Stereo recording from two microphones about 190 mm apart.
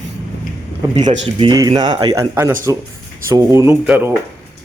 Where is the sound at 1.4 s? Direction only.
20° right (ahead or behind).